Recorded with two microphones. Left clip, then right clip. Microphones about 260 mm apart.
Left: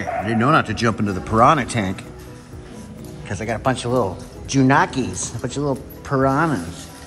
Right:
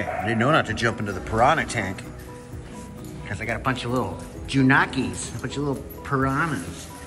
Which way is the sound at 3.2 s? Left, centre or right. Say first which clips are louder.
Left 4 dB; centre.